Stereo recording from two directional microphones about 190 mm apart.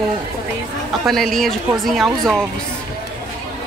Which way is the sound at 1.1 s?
Centre (ahead or behind).